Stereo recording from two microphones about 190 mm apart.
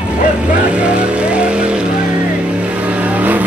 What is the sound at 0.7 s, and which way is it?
Vehicle, 5° right (ahead or behind).